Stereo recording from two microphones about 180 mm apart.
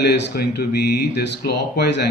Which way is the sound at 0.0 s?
65° left (ahead or behind).